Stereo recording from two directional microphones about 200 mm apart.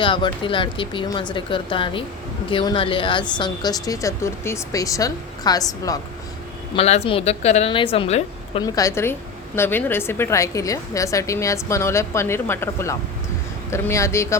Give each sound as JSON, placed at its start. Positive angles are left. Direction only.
{"t": 0.0, "sound": "speech", "side_deg": 25}
{"t": 6.7, "sound": "a woman's voice", "side_deg": 30}
{"t": 8.6, "sound": "a woman's voice", "side_deg": 15}